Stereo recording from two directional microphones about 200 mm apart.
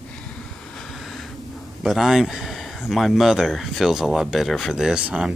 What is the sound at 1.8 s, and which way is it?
Speech, centre (ahead or behind).